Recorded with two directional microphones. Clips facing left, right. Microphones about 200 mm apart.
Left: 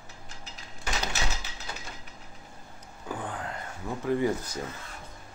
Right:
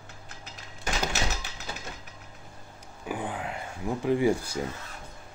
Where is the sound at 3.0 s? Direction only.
10° right (ahead or behind).